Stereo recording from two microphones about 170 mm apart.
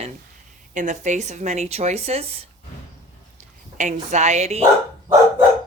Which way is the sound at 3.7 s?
45° right (ahead or behind).